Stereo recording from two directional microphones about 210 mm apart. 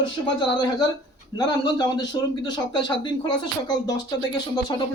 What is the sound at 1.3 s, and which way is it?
Speech, 20° left (ahead or behind).